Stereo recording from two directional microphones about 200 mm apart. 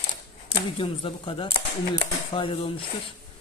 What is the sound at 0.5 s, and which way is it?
Speech, 25° left (ahead or behind).